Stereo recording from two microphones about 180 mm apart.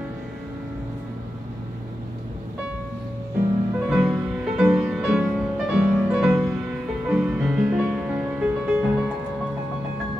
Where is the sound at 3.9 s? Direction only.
Centre (ahead or behind).